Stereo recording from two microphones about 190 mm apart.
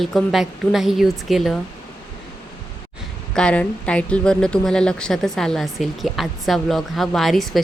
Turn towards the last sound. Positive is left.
turn(degrees=0)  # may be behind; listen again after turning